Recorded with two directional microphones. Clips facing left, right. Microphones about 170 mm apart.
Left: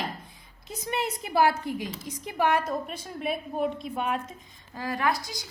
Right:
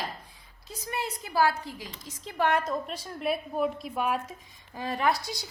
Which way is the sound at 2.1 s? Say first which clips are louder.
Left 1 dB; 15° left (ahead or behind).